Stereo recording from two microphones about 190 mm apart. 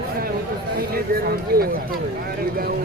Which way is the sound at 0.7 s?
50° right (ahead or behind).